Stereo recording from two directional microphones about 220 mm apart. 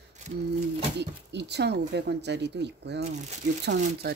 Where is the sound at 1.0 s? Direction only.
50° right (ahead or behind).